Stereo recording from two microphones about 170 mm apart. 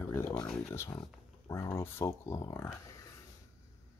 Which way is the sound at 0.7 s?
15° left (ahead or behind).